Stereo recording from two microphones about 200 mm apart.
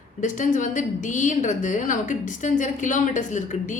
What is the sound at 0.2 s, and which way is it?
A woman's voice, 40° left (ahead or behind).